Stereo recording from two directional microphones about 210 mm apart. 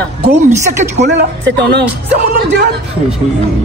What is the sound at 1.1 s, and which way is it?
Speech, 50° right (ahead or behind).